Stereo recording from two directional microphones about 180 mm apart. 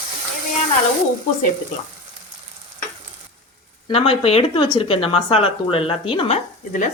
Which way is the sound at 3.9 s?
30° left (ahead or behind).